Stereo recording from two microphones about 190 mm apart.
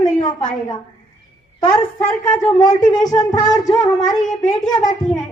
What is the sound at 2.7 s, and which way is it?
A woman's voice, 20° left (ahead or behind).